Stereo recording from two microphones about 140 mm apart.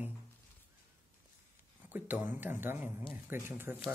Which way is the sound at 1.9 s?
10° right (ahead or behind).